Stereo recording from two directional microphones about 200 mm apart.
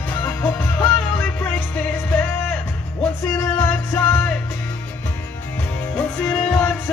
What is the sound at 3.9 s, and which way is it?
Music, 10° left (ahead or behind).